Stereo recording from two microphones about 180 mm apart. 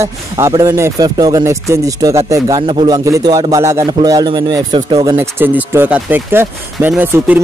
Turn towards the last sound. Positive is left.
turn(degrees=-10)  # may be behind; listen again after turning